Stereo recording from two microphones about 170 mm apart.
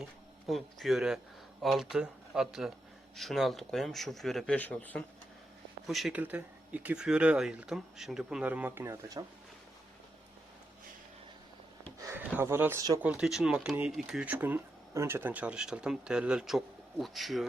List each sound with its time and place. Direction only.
0.0 s speech: centre (ahead or behind); by 9.2 s 20° right (ahead or behind)
11.9 s a sound: 20° right (ahead or behind)
12.3 s speech: 15° right (ahead or behind)
13.0 s speech: 5° right (ahead or behind)